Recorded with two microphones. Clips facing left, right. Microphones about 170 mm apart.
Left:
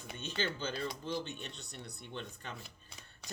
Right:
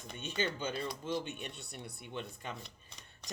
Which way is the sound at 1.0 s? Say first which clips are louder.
Right 2 dB; 15° right (ahead or behind).